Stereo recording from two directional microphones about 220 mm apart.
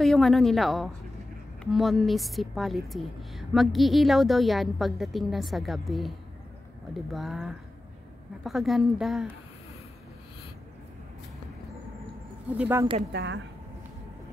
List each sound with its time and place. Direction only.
0.0 s a woman's voice: centre (ahead or behind)
12.5 s speech: 10° right (ahead or behind)
13.1 s speech: 55° right (ahead or behind)